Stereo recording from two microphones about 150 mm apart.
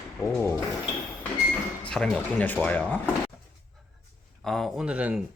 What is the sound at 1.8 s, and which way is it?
Speech, 5° left (ahead or behind).